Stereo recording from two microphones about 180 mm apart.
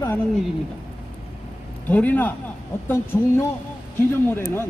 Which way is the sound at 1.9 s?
10° left (ahead or behind).